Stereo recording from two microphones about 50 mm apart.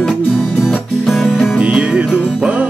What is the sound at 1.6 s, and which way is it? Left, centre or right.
Music, centre.